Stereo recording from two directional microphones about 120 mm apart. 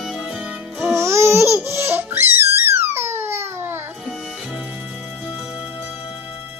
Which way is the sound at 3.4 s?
20° right (ahead or behind).